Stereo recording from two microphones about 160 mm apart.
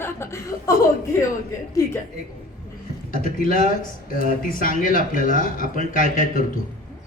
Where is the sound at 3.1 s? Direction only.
60° left (ahead or behind).